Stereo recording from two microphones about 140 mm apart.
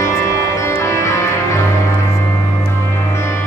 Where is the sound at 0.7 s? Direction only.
20° left (ahead or behind).